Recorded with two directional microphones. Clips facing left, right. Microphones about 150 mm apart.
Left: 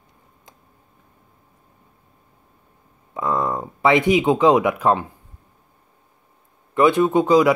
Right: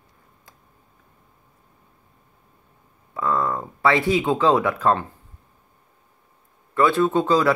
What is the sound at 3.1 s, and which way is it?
Speech, 20° left (ahead or behind).